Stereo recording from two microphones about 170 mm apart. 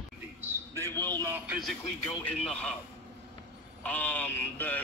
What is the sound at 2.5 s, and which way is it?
Speech, 5° left (ahead or behind).